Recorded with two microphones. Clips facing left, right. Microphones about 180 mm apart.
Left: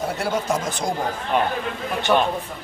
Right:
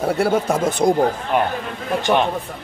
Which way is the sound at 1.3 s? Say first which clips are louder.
Right 2 dB; 10° right (ahead or behind).